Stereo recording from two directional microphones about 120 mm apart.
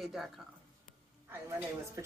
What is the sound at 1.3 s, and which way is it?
Speech, 20° right (ahead or behind).